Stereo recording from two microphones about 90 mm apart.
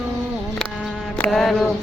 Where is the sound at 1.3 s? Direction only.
Centre (ahead or behind).